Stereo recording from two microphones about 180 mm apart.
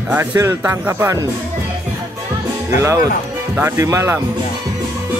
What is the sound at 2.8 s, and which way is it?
Speech, 15° right (ahead or behind).